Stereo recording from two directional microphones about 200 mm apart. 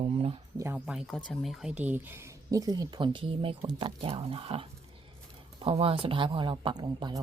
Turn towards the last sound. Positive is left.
turn(degrees=-20)  # may be behind; listen again after turning